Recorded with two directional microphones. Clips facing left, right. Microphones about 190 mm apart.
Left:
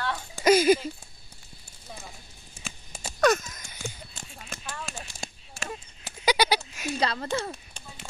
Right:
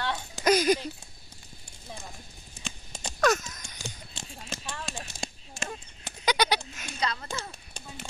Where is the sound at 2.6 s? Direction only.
5° left (ahead or behind).